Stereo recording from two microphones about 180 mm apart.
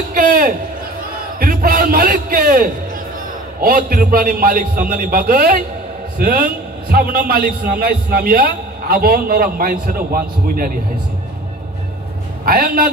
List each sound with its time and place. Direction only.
0.1 s a sound: 50° right (ahead or behind)
1.4 s a man's voice: 60° right (ahead or behind)
12.4 s a man's voice: 55° right (ahead or behind)